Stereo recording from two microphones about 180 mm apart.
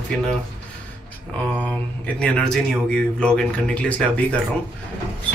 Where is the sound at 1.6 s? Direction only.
5° left (ahead or behind).